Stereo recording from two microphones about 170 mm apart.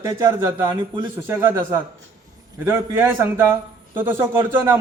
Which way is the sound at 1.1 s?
15° right (ahead or behind).